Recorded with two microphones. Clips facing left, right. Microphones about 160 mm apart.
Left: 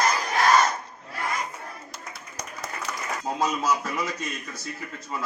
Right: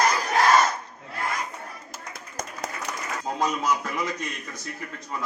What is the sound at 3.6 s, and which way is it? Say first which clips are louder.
Speech: even; 5° left (ahead or behind).